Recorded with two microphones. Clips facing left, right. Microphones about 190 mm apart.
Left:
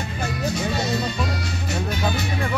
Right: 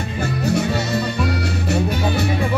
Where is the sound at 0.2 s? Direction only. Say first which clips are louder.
Right 6 dB; 65° right (ahead or behind).